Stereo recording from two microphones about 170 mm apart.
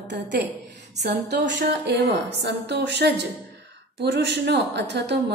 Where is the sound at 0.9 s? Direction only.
80° right.